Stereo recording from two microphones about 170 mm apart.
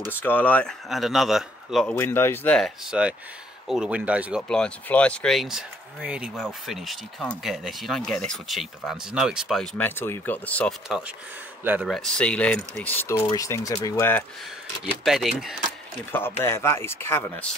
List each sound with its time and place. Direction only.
0.2 s speech: 10° left (ahead or behind)
2.0 s speech: 15° left (ahead or behind); by 9.7 s centre (ahead or behind)
9.8 s speech: 10° left (ahead or behind)
10.9 s speech: 5° right (ahead or behind)
11.9 s speech: 5° left (ahead or behind)
15.0 s speech: centre (ahead or behind)
16.1 s speech: 15° left (ahead or behind)